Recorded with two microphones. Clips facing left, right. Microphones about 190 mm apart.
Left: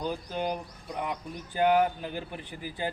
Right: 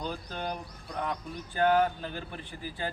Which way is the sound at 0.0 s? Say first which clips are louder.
Left 4 dB; 10° left (ahead or behind).